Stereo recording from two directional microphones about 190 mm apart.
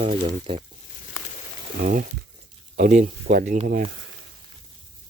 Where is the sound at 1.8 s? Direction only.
40° right (ahead or behind).